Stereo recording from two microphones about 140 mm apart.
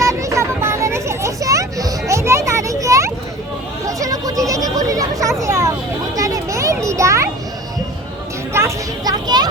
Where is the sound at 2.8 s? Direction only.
20° right (ahead or behind).